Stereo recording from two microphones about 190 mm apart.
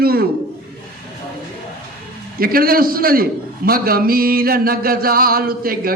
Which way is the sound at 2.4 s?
50° right (ahead or behind).